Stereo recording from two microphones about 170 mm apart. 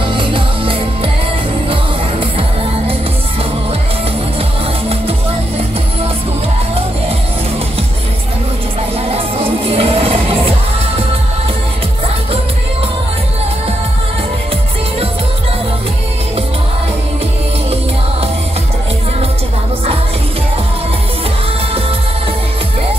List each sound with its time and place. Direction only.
0.1 s music: 30° right (ahead or behind)
9.8 s music: 35° right (ahead or behind)